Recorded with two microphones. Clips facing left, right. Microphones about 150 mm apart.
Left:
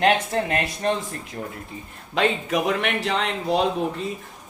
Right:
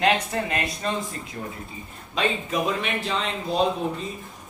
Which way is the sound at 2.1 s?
75° left (ahead or behind).